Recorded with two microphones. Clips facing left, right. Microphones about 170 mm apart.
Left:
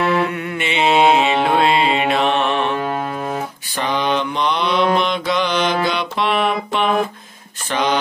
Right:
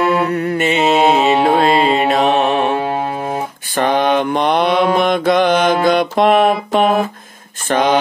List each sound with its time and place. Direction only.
0.2 s music: 40° right (ahead or behind)
2.8 s music: 25° right (ahead or behind)
3.7 s mantra: 50° right (ahead or behind)
7.6 s a sound: 50° right (ahead or behind)